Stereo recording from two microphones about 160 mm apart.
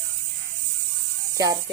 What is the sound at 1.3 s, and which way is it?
Speech, 20° right (ahead or behind).